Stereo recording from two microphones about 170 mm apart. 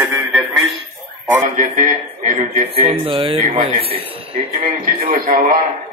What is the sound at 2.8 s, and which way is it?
A man's voice, 35° right (ahead or behind).